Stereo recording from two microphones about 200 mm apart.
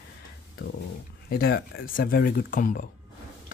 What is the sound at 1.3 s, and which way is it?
Speech, 50° left (ahead or behind).